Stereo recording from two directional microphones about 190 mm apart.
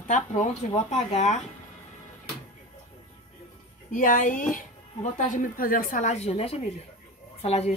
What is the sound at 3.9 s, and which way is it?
A woman's voice, 45° left (ahead or behind).